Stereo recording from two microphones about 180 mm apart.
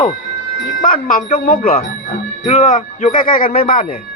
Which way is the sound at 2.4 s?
35° left (ahead or behind).